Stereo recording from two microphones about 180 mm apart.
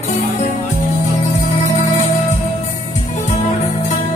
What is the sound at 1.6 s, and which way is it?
Music, 40° left (ahead or behind).